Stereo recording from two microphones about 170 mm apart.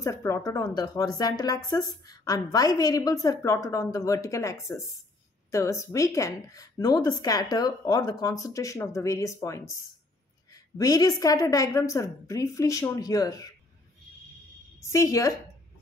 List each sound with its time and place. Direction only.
0.0 s speech: 20° left (ahead or behind)
14.8 s speech: 20° left (ahead or behind)